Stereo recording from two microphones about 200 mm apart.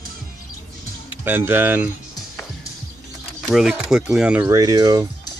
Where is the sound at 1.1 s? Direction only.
10° right (ahead or behind).